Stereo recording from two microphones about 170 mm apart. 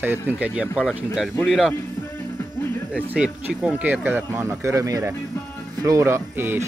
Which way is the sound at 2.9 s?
5° right (ahead or behind).